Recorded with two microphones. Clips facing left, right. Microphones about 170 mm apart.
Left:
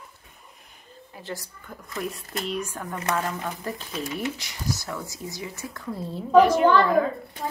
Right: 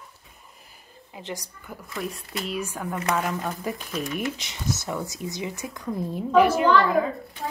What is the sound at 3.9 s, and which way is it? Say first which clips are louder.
Speech: right 1 dB; 20° left (ahead or behind).